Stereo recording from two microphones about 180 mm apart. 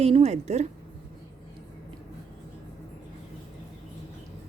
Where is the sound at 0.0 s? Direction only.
35° right (ahead or behind).